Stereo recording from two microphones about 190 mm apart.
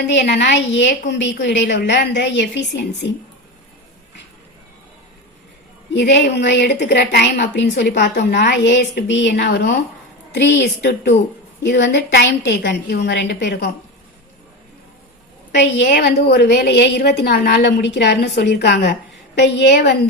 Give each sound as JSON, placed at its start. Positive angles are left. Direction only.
{"t": 0.1, "sound": "a woman's voice", "side_deg": 60}
{"t": 5.9, "sound": "a woman's voice", "side_deg": 65}
{"t": 15.5, "sound": "a woman's voice", "side_deg": 60}